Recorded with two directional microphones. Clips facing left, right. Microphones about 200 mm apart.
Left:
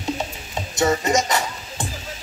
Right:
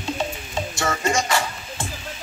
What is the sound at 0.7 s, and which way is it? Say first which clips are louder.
Music: left 5 dB; 20° left (ahead or behind).